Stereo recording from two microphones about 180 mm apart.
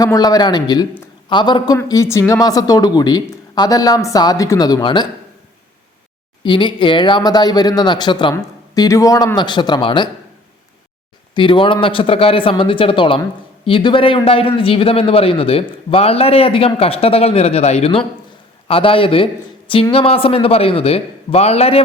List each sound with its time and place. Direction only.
0.0 s speech: 20° left (ahead or behind)
6.4 s speech: 25° left (ahead or behind)
11.3 s a man's voice: 30° left (ahead or behind)